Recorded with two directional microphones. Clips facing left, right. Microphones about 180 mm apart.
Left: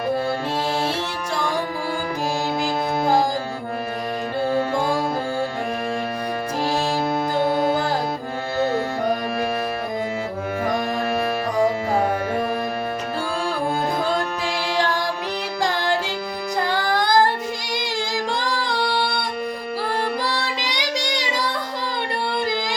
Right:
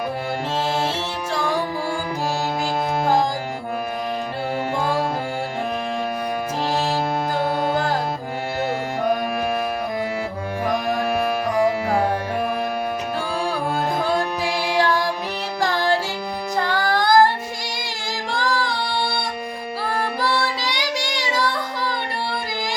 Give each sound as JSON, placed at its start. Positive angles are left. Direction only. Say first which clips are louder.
{"t": 16.6, "sound": "music", "louder": "right 2 dB", "side_deg": 20}